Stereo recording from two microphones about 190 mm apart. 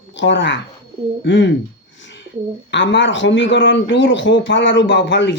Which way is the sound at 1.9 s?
70° left (ahead or behind).